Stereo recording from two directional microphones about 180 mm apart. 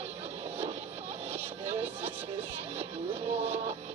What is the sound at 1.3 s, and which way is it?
Music, 35° right (ahead or behind).